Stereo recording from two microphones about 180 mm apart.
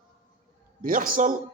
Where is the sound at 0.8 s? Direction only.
50° right (ahead or behind).